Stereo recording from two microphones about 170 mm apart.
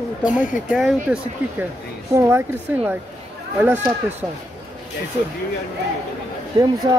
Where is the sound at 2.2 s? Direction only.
15° right (ahead or behind).